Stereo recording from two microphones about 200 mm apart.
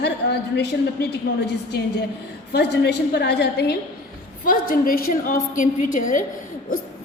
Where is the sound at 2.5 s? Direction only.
55° left (ahead or behind).